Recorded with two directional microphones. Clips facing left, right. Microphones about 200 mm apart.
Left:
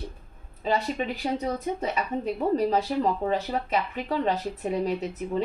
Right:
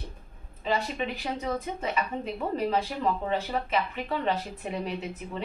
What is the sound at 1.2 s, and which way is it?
A woman's voice, 40° left (ahead or behind).